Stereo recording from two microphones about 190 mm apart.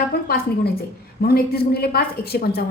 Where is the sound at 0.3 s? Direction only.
55° left (ahead or behind).